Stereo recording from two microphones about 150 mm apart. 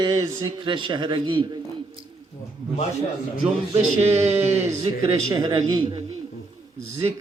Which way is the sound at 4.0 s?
45° right (ahead or behind).